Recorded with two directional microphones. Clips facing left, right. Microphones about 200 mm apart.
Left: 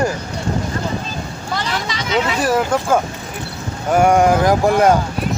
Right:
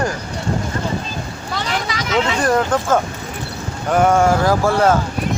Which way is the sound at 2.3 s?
5° left (ahead or behind).